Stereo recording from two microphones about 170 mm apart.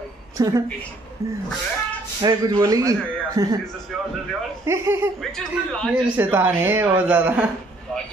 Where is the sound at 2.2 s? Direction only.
20° right (ahead or behind).